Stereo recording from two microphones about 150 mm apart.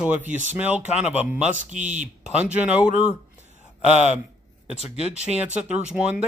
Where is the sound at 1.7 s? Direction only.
55° right (ahead or behind).